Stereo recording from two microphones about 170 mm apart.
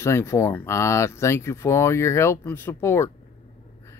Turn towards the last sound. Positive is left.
turn(degrees=15)  # may be behind; listen again after turning